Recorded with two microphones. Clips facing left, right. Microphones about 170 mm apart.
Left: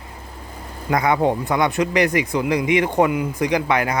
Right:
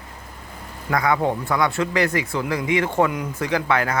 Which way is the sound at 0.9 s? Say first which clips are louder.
Left 2 dB; 20° left (ahead or behind).